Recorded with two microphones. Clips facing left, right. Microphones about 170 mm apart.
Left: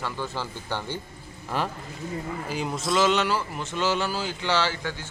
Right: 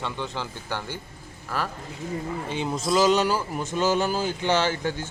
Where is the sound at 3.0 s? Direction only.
35° right (ahead or behind).